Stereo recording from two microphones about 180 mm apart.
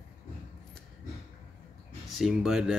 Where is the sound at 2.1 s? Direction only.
Centre (ahead or behind).